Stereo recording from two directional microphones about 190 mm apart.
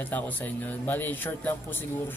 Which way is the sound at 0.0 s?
10° left (ahead or behind).